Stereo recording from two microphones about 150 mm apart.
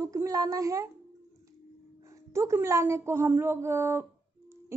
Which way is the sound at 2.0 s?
20° right (ahead or behind).